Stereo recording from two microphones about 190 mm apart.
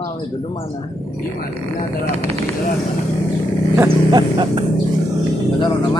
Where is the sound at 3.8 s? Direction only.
25° right (ahead or behind).